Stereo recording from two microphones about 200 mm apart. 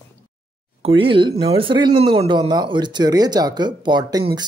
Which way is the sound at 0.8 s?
25° right (ahead or behind).